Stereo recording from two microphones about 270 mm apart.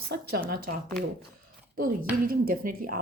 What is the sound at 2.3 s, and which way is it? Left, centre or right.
Speech, right.